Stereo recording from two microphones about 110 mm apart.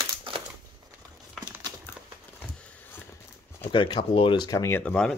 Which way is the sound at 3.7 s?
50° left (ahead or behind).